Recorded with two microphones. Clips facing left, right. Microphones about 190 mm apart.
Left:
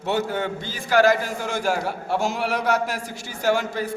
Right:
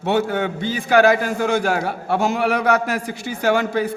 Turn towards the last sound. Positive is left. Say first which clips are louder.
# right 4 dB
turn(degrees=-60)  # may be behind; listen again after turning